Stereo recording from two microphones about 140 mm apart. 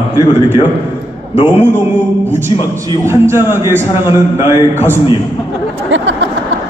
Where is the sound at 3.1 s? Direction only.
15° right (ahead or behind).